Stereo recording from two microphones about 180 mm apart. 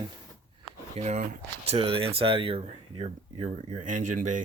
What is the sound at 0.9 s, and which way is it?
Speech, 40° right (ahead or behind).